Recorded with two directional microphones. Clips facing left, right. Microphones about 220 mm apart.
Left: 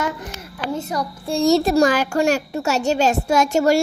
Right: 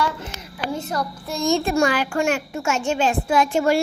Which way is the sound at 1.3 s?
35° left (ahead or behind).